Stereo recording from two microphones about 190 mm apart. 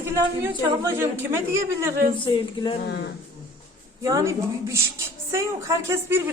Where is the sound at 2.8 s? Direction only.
60° left (ahead or behind).